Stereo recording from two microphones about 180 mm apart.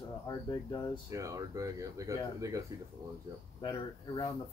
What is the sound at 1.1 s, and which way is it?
Speech, 20° right (ahead or behind).